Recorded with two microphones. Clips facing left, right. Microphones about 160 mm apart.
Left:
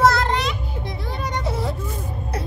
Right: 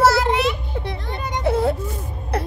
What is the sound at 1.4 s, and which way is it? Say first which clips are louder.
Whimper: right 12 dB; 60° right (ahead or behind).